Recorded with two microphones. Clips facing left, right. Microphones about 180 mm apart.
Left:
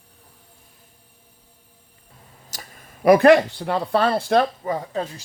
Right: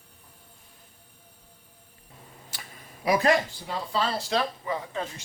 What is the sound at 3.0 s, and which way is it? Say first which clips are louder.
Speech: left 10 dB; 60° left (ahead or behind).